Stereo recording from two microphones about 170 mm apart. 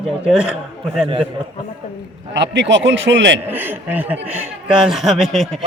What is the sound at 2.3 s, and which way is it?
A man's voice, 90° right.